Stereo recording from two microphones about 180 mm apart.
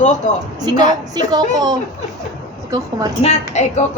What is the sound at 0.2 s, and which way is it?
Speech, 45° left (ahead or behind).